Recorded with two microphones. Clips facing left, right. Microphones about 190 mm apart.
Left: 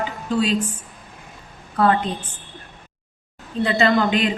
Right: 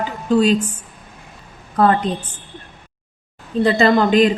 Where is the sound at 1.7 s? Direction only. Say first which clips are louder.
Right 3 dB; 40° right (ahead or behind).